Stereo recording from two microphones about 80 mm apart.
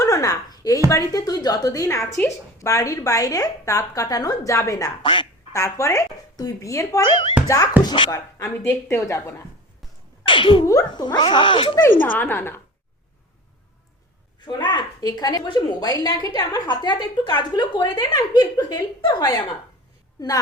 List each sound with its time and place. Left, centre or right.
0.0 s a sound: left
0.9 s a woman's voice: left
5.0 s speech: left
5.5 s a woman's voice: left
7.1 s speech: left
7.4 s a woman's voice: left
7.8 s speech: left
8.1 s speech: left
10.2 s speech: left
10.9 s a woman's voice: left
12.2 s speech: left
14.4 s a woman's voice: left
16.6 s speech: left
18.2 s a woman's voice: left